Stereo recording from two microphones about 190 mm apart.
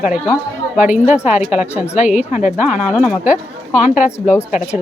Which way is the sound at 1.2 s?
35° left (ahead or behind).